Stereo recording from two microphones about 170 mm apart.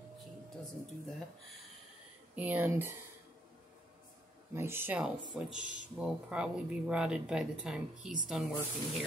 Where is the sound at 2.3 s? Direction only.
10° right (ahead or behind).